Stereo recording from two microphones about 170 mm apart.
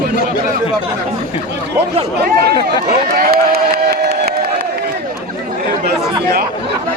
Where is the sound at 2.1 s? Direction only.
70° right (ahead or behind).